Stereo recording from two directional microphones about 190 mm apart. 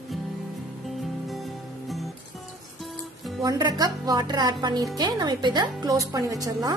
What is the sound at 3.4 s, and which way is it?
Speech, 20° right (ahead or behind).